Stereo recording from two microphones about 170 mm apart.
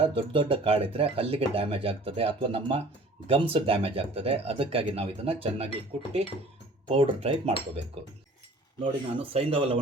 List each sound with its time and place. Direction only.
0.1 s speech: 30° right (ahead or behind)
6.8 s speech: 35° right (ahead or behind)
8.8 s speech: 30° right (ahead or behind)